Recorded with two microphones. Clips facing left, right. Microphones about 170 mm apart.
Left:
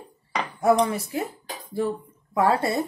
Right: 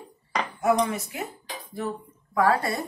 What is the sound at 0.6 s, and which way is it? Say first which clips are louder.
Speech: left 3 dB; 35° left (ahead or behind).